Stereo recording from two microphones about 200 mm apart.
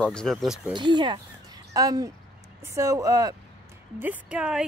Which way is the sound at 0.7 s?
20° right (ahead or behind).